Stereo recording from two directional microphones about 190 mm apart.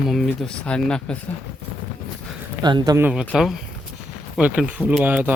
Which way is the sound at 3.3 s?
Centre (ahead or behind).